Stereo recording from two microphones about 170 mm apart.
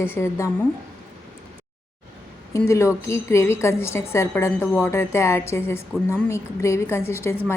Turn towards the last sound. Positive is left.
turn(degrees=15)  # may be behind; listen again after turning